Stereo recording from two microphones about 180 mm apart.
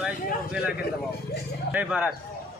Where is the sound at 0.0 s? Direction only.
5° right (ahead or behind).